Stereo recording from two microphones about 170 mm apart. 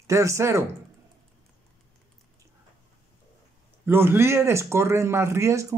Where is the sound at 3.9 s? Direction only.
15° right (ahead or behind).